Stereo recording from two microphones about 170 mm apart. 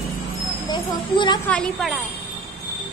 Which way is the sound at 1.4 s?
5° left (ahead or behind).